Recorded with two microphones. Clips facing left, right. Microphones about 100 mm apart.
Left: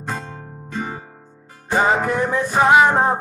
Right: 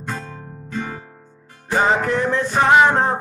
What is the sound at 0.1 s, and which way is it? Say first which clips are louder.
Music: left 1 dB; 25° left (ahead or behind).